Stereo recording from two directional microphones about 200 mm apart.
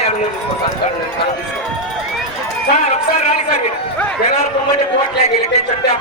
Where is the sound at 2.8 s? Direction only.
35° left (ahead or behind).